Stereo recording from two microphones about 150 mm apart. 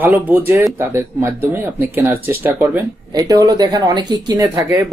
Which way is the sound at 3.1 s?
25° right (ahead or behind).